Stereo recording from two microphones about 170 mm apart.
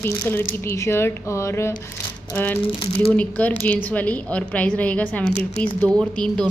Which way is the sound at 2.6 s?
30° left (ahead or behind).